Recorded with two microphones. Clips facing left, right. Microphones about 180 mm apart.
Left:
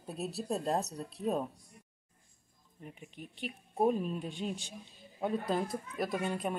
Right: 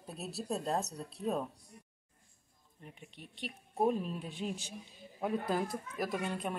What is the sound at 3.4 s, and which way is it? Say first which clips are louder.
Speech: left 2 dB; 5° left (ahead or behind).